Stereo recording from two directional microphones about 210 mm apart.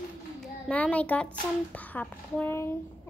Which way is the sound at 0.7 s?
5° left (ahead or behind).